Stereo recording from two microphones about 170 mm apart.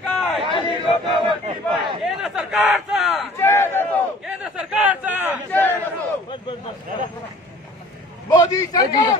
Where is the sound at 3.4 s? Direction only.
15° left (ahead or behind).